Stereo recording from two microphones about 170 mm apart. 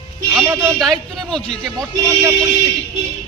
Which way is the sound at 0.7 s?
Centre (ahead or behind).